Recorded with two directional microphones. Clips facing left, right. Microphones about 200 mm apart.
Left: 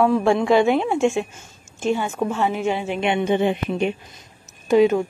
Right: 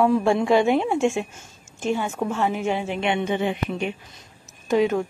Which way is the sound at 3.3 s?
30° left (ahead or behind).